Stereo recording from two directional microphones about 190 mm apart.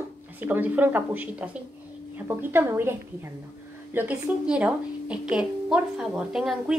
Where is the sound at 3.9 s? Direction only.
5° right (ahead or behind).